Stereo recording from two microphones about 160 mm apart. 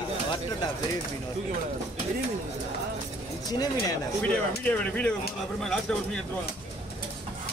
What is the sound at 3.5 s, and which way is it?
Speech, 25° left (ahead or behind).